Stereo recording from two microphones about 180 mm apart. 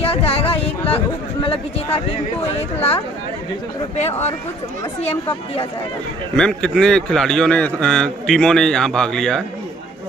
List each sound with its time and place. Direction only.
0.0 s a sound: 35° left (ahead or behind)
1.4 s speech: 30° left (ahead or behind)
3.9 s speech: 40° left (ahead or behind)
6.3 s a man's voice: 5° left (ahead or behind)